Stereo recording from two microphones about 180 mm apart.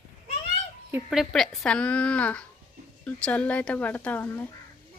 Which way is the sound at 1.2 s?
Centre (ahead or behind).